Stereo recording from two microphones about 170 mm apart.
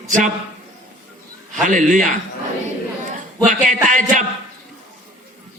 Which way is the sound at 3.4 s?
50° right (ahead or behind).